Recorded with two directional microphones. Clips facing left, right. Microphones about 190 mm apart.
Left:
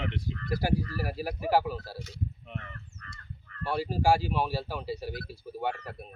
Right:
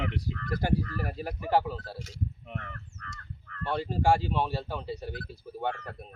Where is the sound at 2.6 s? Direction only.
50° right (ahead or behind).